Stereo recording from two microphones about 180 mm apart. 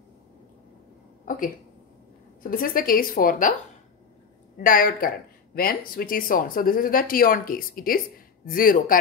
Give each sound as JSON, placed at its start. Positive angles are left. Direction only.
{"t": 1.2, "sound": "a sound", "side_deg": 50}
{"t": 2.4, "sound": "speech", "side_deg": 50}
{"t": 4.6, "sound": "speech", "side_deg": 50}